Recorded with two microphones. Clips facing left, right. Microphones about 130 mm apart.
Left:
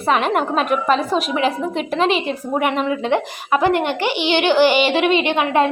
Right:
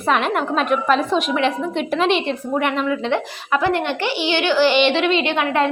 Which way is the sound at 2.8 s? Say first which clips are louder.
Left 1 dB; 15° left (ahead or behind).